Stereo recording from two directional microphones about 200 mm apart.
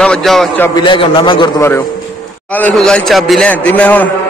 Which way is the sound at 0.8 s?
25° left (ahead or behind).